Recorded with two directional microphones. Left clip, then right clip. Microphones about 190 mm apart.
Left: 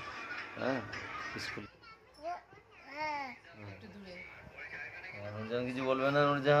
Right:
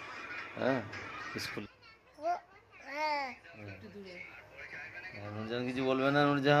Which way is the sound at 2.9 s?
40° right (ahead or behind).